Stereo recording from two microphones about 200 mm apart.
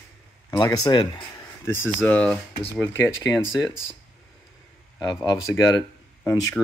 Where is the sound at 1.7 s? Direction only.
5° left (ahead or behind).